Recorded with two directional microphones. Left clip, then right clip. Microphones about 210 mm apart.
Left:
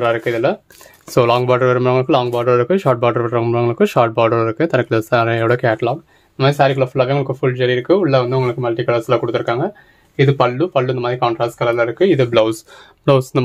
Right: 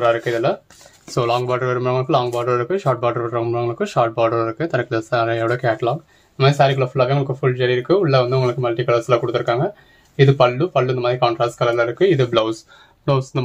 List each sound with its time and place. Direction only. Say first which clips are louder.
0.0 s speech: left 1 dB; 45° left (ahead or behind)